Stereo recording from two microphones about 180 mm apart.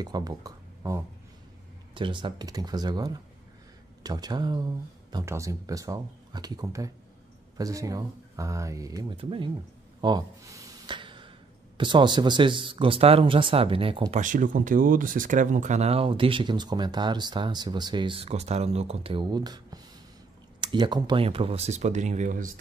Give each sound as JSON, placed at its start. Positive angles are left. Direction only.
{"t": 0.0, "sound": "speech", "side_deg": -20}
{"t": 9.1, "sound": "speech", "side_deg": -30}
{"t": 14.2, "sound": "speech", "side_deg": -45}